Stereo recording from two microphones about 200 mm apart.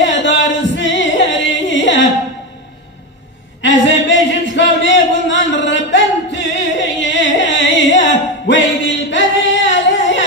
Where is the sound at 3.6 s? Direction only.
65° left (ahead or behind).